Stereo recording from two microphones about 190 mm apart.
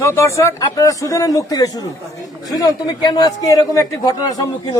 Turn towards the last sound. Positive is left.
turn(degrees=15)  # may be behind; listen again after turning